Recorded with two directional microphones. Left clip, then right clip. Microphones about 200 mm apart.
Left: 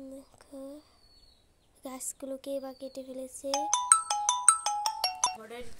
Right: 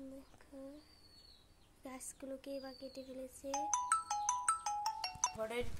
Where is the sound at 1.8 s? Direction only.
25° left (ahead or behind).